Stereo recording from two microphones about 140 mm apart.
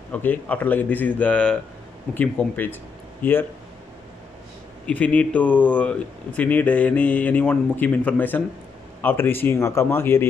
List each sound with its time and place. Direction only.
0.1 s speech: 10° left (ahead or behind)
4.8 s speech: 10° left (ahead or behind)